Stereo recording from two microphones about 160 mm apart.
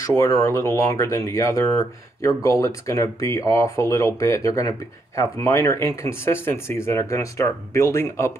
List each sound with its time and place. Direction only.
0.0 s speech: 15° left (ahead or behind)